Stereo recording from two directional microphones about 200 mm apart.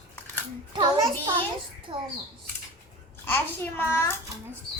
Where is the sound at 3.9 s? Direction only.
15° left (ahead or behind).